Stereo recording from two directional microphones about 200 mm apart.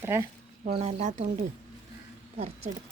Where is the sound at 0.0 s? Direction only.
15° right (ahead or behind).